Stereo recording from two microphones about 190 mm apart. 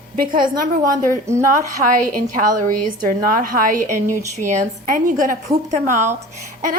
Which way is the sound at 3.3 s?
50° right (ahead or behind).